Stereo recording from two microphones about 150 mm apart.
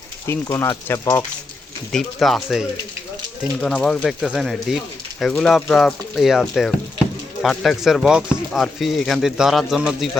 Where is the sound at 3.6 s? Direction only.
5° left (ahead or behind).